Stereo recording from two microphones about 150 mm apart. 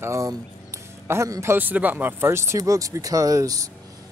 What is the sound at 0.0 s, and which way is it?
A man's voice, 20° right (ahead or behind).